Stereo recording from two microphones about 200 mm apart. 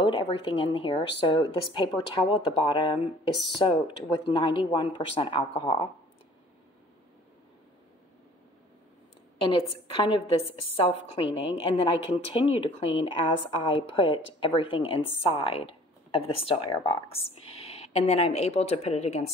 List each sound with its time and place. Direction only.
0.0 s a woman's voice: 25° left (ahead or behind)
9.4 s a woman's voice: 25° left (ahead or behind)